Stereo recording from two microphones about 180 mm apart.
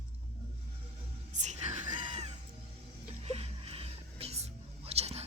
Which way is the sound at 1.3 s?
40° right (ahead or behind).